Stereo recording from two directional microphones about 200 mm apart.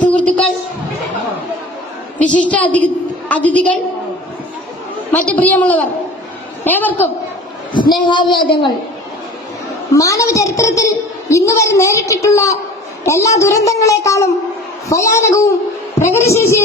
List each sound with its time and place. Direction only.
2.2 s a woman's voice: 5° left (ahead or behind)
5.1 s a woman's voice: 10° left (ahead or behind)
7.7 s a woman's voice: 25° left (ahead or behind)
9.9 s a woman's voice: 15° left (ahead or behind)